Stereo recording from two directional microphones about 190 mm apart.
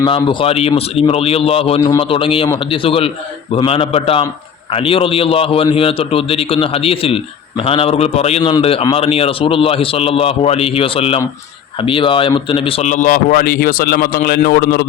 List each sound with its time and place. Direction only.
0.0 s a man's voice: 25° left (ahead or behind); by 14.8 s 55° left (ahead or behind)